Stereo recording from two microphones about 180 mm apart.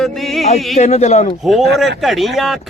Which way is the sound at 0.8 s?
40° left (ahead or behind).